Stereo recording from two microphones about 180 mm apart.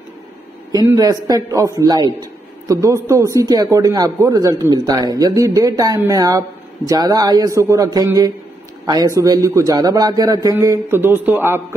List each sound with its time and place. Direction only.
0.7 s a man's voice: 20° right (ahead or behind)